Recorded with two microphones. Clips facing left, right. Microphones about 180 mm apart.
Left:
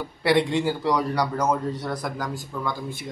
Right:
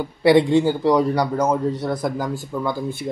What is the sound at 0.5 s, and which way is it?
A man's voice, 25° right (ahead or behind).